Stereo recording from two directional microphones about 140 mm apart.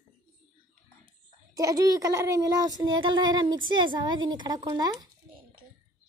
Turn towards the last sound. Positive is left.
turn(degrees=-30)  # may be behind; listen again after turning